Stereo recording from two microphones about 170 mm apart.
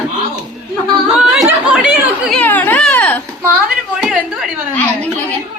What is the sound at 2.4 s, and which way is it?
Speech, 10° left (ahead or behind).